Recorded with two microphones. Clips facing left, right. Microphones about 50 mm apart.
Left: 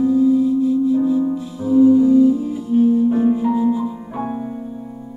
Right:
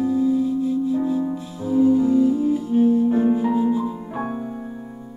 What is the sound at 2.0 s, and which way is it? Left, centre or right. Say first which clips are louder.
Music: left 4 dB; right.